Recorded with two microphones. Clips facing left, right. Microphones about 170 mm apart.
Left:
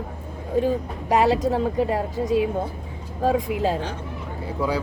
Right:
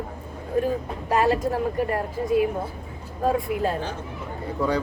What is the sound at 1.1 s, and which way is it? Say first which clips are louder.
Speech: left 2 dB; 80° left.